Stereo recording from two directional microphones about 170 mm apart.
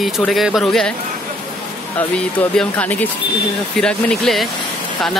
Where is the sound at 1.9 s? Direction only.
10° left (ahead or behind).